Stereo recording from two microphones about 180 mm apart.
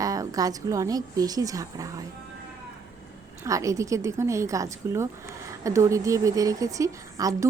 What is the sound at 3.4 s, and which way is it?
Speech, 15° right (ahead or behind).